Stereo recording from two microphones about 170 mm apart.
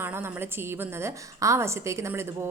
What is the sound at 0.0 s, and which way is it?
A woman's voice, 10° right (ahead or behind).